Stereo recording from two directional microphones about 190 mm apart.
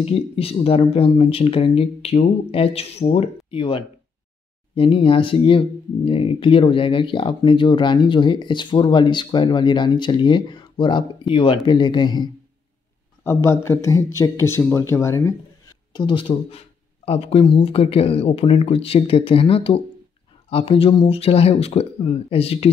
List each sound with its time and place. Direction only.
0.0 s speech: 30° left (ahead or behind)